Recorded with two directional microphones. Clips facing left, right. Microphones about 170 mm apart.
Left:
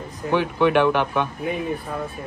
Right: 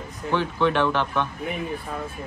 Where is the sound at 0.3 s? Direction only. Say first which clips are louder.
Left 4 dB; 15° left (ahead or behind).